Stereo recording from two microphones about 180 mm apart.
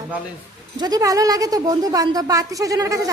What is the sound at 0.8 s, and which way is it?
Speech, 20° right (ahead or behind).